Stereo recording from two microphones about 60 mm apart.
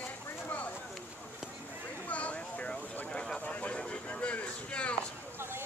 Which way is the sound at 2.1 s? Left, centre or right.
Left.